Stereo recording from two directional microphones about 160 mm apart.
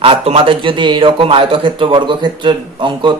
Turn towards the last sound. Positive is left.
turn(degrees=-30)  # may be behind; listen again after turning